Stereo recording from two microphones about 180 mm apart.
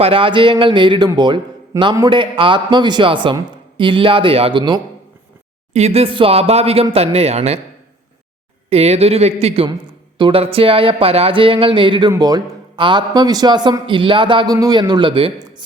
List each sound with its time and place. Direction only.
0.0 s speech: 30° right (ahead or behind)
8.7 s speech: 35° right (ahead or behind)